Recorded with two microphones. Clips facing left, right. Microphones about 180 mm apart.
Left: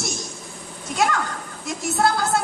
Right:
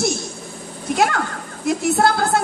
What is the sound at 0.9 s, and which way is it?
Speech, 55° right (ahead or behind).